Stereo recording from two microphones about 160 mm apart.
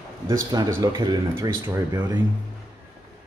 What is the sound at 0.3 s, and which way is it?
Speech, 20° right (ahead or behind).